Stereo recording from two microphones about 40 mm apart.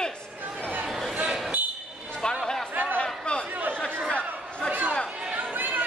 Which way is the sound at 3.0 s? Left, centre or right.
Left.